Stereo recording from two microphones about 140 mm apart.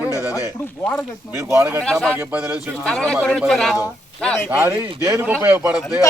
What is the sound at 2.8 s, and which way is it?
Speech, 5° left (ahead or behind).